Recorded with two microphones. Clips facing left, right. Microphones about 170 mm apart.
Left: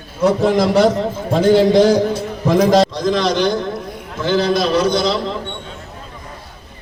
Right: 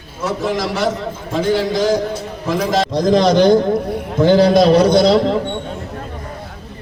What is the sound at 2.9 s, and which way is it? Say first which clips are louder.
A man's voice: right 4 dB; 45° right (ahead or behind).